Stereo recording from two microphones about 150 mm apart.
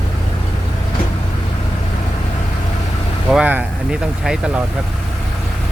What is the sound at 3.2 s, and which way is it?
Speech, 5° right (ahead or behind).